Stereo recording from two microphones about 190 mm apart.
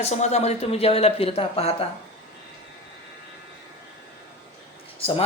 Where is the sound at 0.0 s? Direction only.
35° left (ahead or behind).